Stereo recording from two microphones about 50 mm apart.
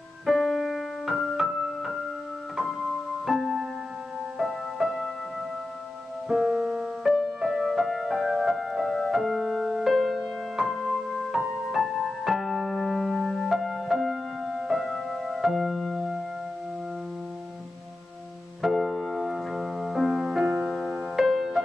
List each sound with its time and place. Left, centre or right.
0.3 s keyboard: centre
3.3 s music: centre
6.4 s music: right; by 16.2 s centre
18.6 s music: centre
20.7 s music: centre